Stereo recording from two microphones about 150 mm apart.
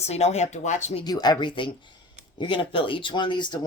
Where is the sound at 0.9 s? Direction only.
25° left (ahead or behind).